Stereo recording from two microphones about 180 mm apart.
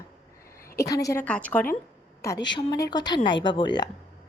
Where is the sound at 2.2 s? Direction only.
20° left (ahead or behind).